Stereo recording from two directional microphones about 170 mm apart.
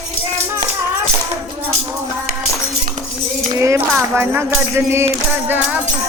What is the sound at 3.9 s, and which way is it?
Speech, 10° right (ahead or behind).